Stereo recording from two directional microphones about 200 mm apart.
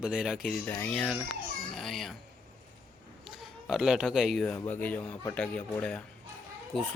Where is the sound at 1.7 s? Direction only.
Centre (ahead or behind).